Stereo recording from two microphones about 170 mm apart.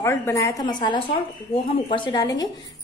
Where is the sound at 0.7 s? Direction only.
30° left (ahead or behind).